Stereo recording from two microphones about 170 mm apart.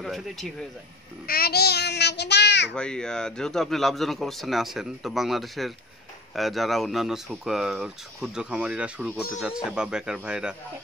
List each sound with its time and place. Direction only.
0.0 s speech: centre (ahead or behind)
1.2 s a child's voice: 65° left (ahead or behind); by 2.7 s 90° left
2.7 s speech: 5° left (ahead or behind)